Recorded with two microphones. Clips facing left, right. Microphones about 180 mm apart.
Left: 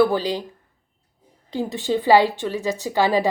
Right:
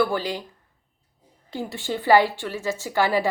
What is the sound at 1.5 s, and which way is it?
A woman's voice, 15° left (ahead or behind).